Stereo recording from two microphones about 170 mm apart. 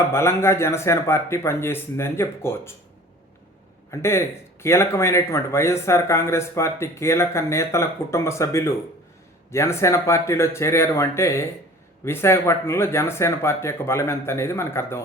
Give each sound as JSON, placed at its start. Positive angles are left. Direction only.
{"t": 0.1, "sound": "speech", "side_deg": 15}
{"t": 3.9, "sound": "speech", "side_deg": 15}